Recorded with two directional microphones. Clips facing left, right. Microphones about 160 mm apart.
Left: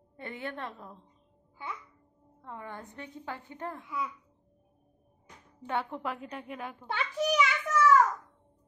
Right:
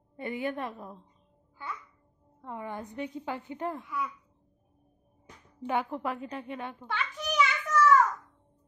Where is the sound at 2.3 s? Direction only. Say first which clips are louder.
Right 5 dB; 15° right (ahead or behind).